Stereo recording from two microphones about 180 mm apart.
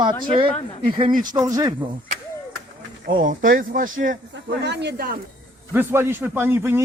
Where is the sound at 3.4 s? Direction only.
50° right (ahead or behind).